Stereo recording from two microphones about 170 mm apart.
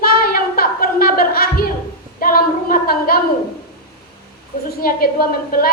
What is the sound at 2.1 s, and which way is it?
Child singing, 55° left (ahead or behind).